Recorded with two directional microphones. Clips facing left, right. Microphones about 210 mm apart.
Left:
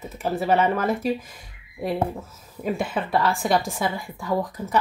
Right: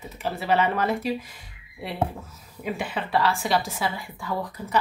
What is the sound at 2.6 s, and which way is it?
Speech, 45° left (ahead or behind).